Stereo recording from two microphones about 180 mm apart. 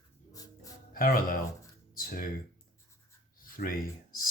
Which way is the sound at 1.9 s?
50° left (ahead or behind).